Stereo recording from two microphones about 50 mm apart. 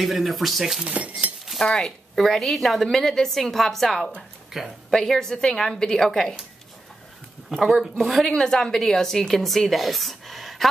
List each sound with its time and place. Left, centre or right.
0.0 s a woman's voice: centre
0.8 s speech: right
1.6 s a woman's voice: centre
2.1 s a woman's voice: centre
4.6 s speech: centre
4.9 s a woman's voice: centre
7.4 s a woman's voice: centre
8.4 s a woman's voice: centre